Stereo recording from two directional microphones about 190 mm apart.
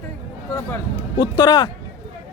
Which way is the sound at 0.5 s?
20° left (ahead or behind).